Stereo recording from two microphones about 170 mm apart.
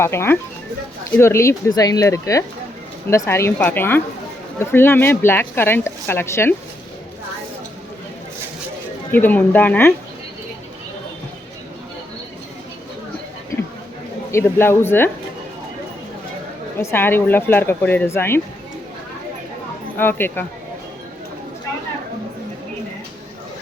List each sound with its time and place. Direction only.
0.0 s speech: 15° left (ahead or behind)
9.1 s speech: 10° left (ahead or behind)
14.3 s speech: 15° left (ahead or behind)
16.7 s speech: 10° left (ahead or behind)
20.0 s speech: 10° left (ahead or behind)